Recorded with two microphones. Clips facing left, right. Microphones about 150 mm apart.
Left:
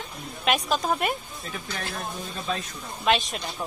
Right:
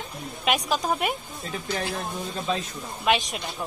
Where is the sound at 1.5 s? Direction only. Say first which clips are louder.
Right 5 dB; 30° right (ahead or behind).